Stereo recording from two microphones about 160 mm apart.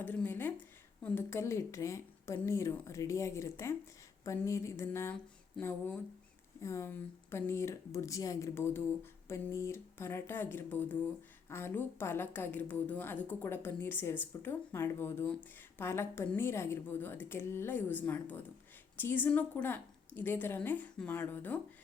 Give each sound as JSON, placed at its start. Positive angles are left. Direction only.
{"t": 0.0, "sound": "speech", "side_deg": 10}